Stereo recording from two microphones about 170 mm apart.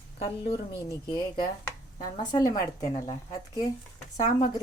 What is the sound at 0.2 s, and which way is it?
Speech, 35° left (ahead or behind).